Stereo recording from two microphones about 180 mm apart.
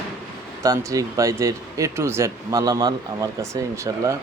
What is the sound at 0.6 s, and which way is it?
Speech, 15° right (ahead or behind).